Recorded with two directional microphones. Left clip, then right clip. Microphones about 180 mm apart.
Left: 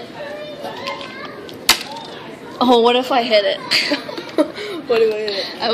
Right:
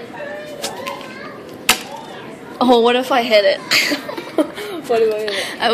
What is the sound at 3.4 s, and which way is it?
Speech, 15° right (ahead or behind).